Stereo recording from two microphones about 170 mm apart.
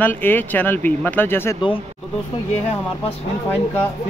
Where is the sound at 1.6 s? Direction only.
30° left (ahead or behind).